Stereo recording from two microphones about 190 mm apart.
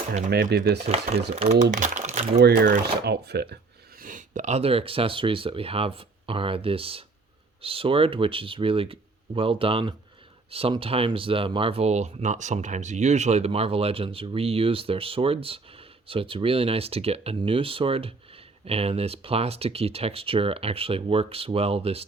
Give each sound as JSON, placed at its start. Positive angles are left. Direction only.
{"t": 0.3, "sound": "speech", "side_deg": -60}
{"t": 1.4, "sound": "speech", "side_deg": -40}
{"t": 4.0, "sound": "speech", "side_deg": -40}